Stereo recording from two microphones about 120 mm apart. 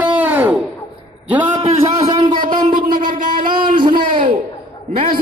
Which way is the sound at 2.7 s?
90° right.